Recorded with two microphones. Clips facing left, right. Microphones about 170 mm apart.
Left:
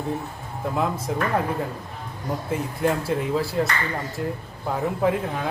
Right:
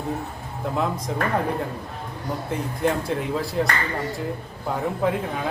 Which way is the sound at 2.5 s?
Centre (ahead or behind).